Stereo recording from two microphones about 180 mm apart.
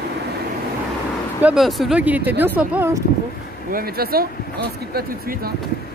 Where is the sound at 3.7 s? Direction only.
60° right (ahead or behind).